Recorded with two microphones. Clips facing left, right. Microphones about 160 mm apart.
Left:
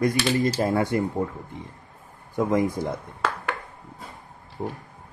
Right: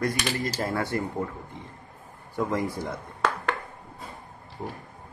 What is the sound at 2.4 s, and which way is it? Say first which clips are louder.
Speech: left 5 dB; 15° left (ahead or behind).